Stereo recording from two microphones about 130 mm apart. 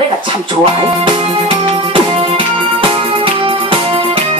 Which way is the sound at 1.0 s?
40° right (ahead or behind).